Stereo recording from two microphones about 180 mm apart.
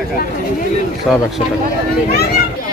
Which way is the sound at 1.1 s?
Centre (ahead or behind).